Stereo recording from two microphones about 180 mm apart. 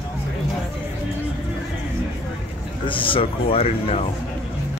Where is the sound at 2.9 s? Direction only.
30° left (ahead or behind).